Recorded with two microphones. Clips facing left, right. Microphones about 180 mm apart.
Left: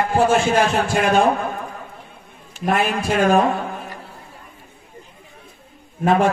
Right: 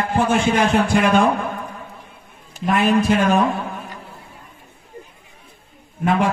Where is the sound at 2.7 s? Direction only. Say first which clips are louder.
Right 3 dB; 45° left (ahead or behind).